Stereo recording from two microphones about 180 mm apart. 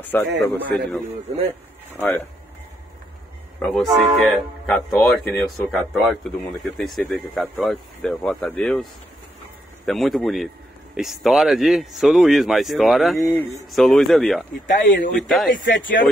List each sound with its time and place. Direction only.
0.0 s a man's voice: 10° left (ahead or behind)
3.5 s speech: 5° left (ahead or behind)
9.8 s speech: centre (ahead or behind)
14.5 s speech: 50° left (ahead or behind)
15.1 s speech: centre (ahead or behind)
15.5 s speech: 50° left (ahead or behind)